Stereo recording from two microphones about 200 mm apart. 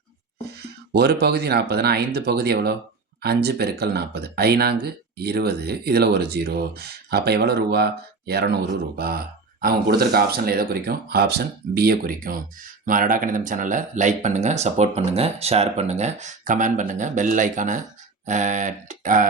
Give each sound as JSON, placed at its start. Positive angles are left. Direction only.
{"t": 0.9, "sound": "speech", "side_deg": -55}